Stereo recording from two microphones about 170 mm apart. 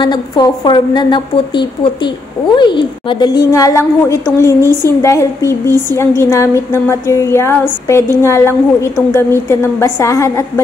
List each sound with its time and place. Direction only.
0.0 s a woman's voice: 25° left (ahead or behind)
4.6 s a woman's voice: 20° right (ahead or behind)
5.0 s a woman's voice: 15° left (ahead or behind)